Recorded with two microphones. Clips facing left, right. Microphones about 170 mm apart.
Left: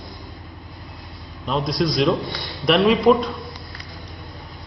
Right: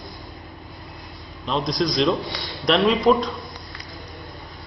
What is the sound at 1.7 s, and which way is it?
A man's voice, 5° left (ahead or behind).